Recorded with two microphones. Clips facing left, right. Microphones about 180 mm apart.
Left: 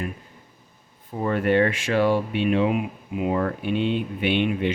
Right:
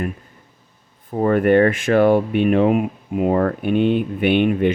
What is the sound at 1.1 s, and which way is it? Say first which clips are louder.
Speech: right 6 dB; 50° right (ahead or behind).